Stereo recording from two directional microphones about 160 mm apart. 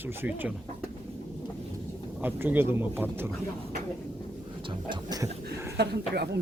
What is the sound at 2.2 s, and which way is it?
Speech, 10° right (ahead or behind).